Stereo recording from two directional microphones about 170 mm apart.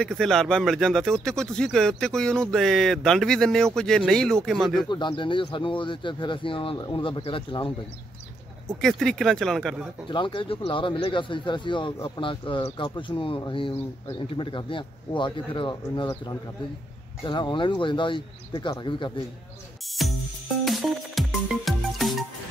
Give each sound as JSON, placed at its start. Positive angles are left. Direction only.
{"t": 0.1, "sound": "speech", "side_deg": 0}
{"t": 4.8, "sound": "speech", "side_deg": 30}
{"t": 8.8, "sound": "speech", "side_deg": 5}
{"t": 10.0, "sound": "speech", "side_deg": 30}
{"t": 17.2, "sound": "speech", "side_deg": 25}
{"t": 20.0, "sound": "speech", "side_deg": 0}
{"t": 20.6, "sound": "music", "side_deg": 0}